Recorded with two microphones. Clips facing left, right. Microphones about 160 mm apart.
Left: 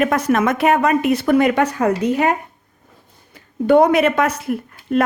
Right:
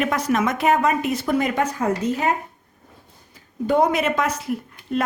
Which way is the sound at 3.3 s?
65° left (ahead or behind).